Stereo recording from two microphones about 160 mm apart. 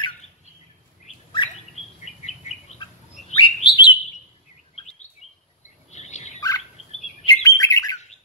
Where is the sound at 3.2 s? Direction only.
30° left (ahead or behind).